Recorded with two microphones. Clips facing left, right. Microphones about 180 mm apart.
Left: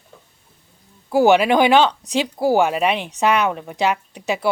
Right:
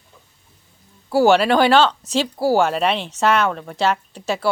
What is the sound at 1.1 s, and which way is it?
Speech, 15° left (ahead or behind).